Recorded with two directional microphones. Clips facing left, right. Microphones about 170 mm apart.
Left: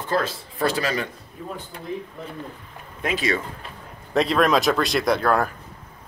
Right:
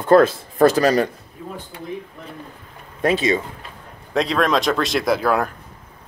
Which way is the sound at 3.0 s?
35° right (ahead or behind).